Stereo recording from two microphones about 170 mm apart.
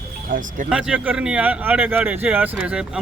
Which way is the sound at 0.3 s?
50° right (ahead or behind).